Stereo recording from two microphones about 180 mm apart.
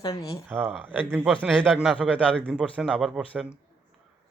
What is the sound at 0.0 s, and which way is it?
Speech, 20° left (ahead or behind).